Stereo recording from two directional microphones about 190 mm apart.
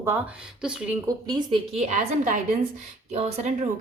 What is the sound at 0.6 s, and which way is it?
Speech, 5° right (ahead or behind).